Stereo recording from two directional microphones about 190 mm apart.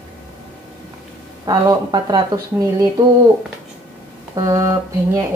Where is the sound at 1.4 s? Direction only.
20° right (ahead or behind).